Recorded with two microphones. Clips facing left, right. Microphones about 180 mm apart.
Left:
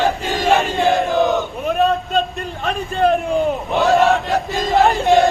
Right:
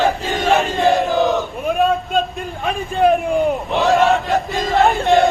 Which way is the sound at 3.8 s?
Centre (ahead or behind).